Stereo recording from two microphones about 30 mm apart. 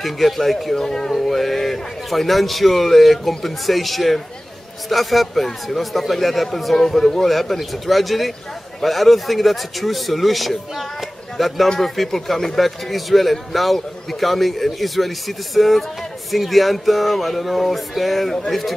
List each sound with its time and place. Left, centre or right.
0.0 s a man's voice: centre
0.7 s a man's voice: centre